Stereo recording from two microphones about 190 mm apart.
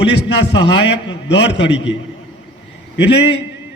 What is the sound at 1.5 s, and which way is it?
Speech, 65° left (ahead or behind).